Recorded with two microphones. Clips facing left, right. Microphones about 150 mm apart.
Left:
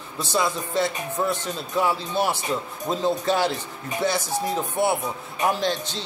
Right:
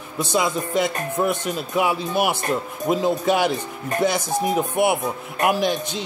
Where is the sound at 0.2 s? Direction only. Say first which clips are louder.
Right 3 dB; 15° right (ahead or behind).